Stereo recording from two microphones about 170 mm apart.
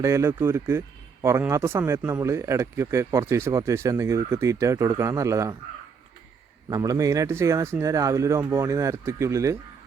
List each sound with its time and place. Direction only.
0.0 s speech: 15° right (ahead or behind)
6.7 s speech: 20° right (ahead or behind)